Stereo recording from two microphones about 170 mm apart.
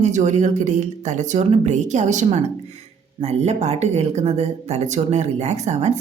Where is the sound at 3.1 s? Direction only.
40° right (ahead or behind).